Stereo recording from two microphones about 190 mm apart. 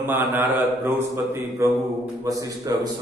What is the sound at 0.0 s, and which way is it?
A man's voice, 10° right (ahead or behind).